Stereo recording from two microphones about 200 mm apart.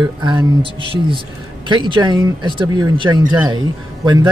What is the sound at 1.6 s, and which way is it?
Speech, 25° right (ahead or behind).